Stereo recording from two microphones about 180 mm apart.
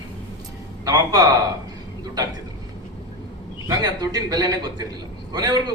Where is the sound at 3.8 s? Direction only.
20° right (ahead or behind).